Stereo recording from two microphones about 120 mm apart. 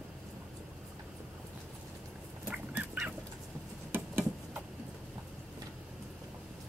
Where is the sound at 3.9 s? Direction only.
20° right (ahead or behind).